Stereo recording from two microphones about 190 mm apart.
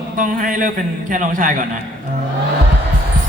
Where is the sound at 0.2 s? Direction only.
45° right (ahead or behind).